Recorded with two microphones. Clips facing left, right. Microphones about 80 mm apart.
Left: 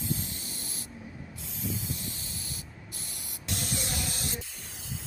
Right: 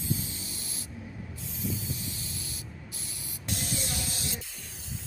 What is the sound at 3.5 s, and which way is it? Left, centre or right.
Spray, left.